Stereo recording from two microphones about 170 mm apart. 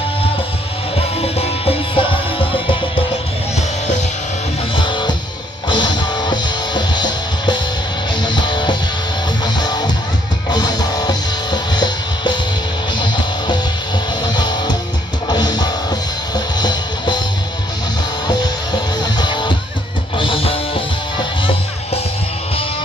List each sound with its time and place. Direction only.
1.2 s music: 35° left (ahead or behind)
4.8 s music: 30° left (ahead or behind)
14.2 s music: 25° left (ahead or behind)
18.2 s music: 25° left (ahead or behind)